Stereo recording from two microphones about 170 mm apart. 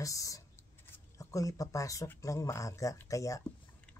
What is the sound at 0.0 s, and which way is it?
Speech, 20° left (ahead or behind).